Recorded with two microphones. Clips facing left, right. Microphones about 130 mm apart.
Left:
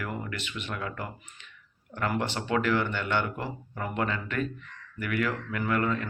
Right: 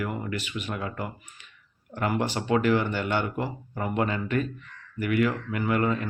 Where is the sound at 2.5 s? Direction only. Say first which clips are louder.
Right 3 dB; 20° right (ahead or behind).